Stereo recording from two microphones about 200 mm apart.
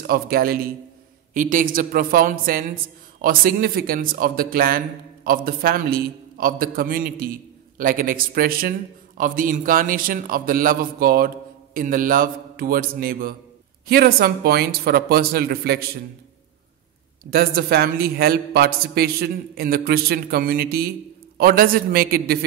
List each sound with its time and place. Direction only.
0.0 s a woman's voice: 45° right (ahead or behind)
17.3 s a woman's voice: 50° right (ahead or behind)